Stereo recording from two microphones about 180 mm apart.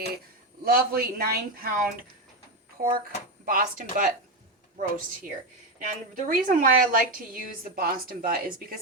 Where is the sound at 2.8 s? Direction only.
50° right (ahead or behind).